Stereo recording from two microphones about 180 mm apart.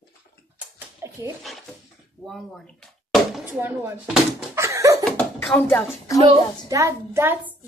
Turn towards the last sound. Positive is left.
turn(degrees=-15)  # may be behind; listen again after turning